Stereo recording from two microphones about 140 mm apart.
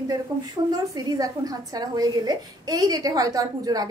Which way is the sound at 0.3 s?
30° right (ahead or behind).